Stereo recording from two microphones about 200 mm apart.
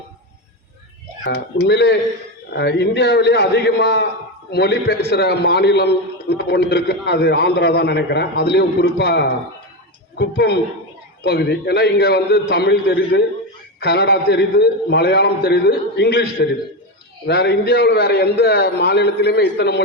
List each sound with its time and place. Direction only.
1.2 s a man's voice: 55° left (ahead or behind)